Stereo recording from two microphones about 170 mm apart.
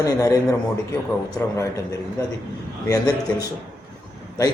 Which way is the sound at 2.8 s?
20° left (ahead or behind).